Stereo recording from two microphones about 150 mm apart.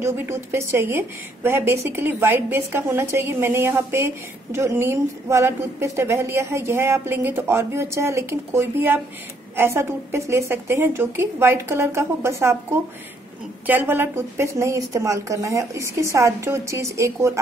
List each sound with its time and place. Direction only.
0.0 s a woman's voice: 15° right (ahead or behind)
13.7 s a woman's voice: 10° right (ahead or behind)